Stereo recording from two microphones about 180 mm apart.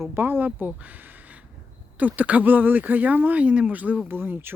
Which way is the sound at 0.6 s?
10° right (ahead or behind).